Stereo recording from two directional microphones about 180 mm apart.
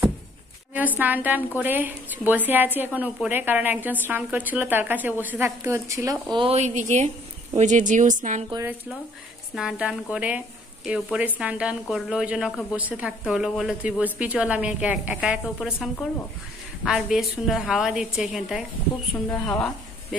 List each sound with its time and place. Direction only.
0.7 s a woman's voice: 10° right (ahead or behind)
6.3 s a woman's voice: 35° right (ahead or behind)
9.6 s speech: 5° right (ahead or behind)